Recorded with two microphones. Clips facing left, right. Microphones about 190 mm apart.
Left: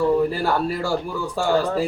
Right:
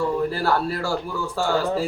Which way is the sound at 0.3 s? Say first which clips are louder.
Left 1 dB; 15° left (ahead or behind).